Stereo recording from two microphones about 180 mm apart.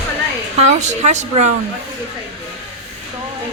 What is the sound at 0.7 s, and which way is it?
Speech, 40° right (ahead or behind).